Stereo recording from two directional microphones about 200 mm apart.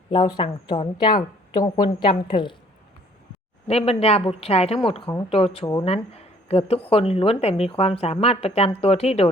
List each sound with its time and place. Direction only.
0.1 s a woman's voice: 25° left (ahead or behind)
3.7 s a woman's voice: 30° left (ahead or behind)